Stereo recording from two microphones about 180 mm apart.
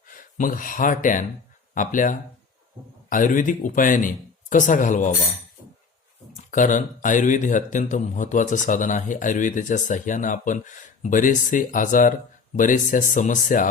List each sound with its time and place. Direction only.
0.1 s speech: 50° left (ahead or behind)
6.3 s speech: 45° left (ahead or behind)